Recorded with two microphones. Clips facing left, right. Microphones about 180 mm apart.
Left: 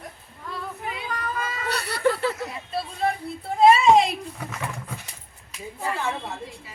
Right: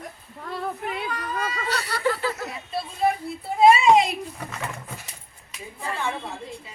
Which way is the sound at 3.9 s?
Centre (ahead or behind).